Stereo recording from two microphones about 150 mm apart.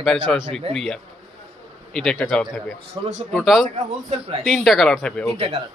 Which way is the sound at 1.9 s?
5° left (ahead or behind).